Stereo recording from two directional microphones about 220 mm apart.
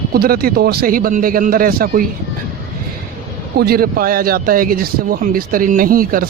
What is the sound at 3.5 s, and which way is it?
Speech, 45° right (ahead or behind).